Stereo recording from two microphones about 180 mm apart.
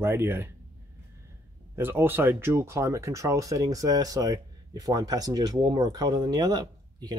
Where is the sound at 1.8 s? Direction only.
10° right (ahead or behind).